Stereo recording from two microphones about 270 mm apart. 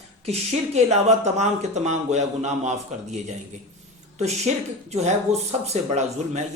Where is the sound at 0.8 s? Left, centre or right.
Right.